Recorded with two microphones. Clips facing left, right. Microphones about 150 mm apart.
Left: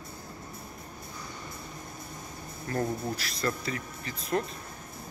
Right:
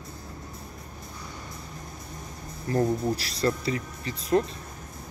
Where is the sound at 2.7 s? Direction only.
30° right (ahead or behind).